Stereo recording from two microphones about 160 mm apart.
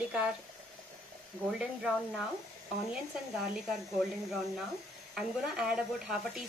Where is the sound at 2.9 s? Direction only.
5° right (ahead or behind).